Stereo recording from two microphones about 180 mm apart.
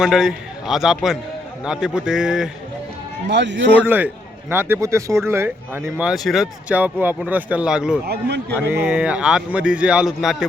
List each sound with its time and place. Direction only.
0.0 s a man's voice: centre (ahead or behind)
3.2 s speech: 75° right (ahead or behind)
3.8 s a man's voice: 10° right (ahead or behind)
8.0 s speech: 65° right (ahead or behind)
8.5 s a man's voice: 10° right (ahead or behind)